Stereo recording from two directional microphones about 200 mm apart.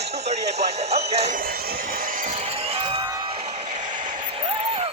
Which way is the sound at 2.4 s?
30° right (ahead or behind).